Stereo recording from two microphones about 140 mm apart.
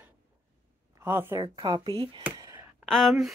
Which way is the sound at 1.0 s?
15° right (ahead or behind).